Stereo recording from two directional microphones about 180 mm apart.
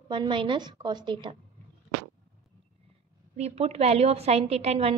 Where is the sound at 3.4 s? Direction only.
35° right (ahead or behind).